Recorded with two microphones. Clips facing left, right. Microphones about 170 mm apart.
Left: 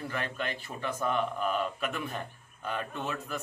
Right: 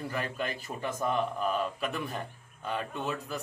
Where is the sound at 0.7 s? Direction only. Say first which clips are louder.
Right 2 dB; 20° right (ahead or behind).